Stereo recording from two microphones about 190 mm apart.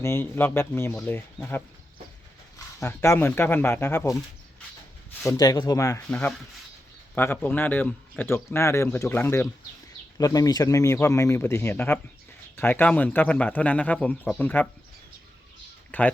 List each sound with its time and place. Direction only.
0.0 s a man's voice: 10° left (ahead or behind)
2.8 s a man's voice: 15° left (ahead or behind)
5.2 s a man's voice: 15° left (ahead or behind)
15.9 s speech: 10° left (ahead or behind)